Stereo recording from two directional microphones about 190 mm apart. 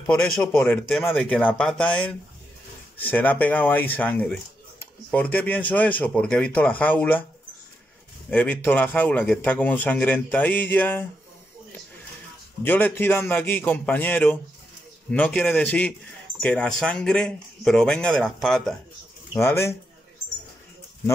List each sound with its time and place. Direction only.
0.0 s speech: 5° left (ahead or behind)
8.3 s speech: 10° left (ahead or behind)
12.6 s speech: 10° left (ahead or behind)
19.3 s speech: 15° left (ahead or behind)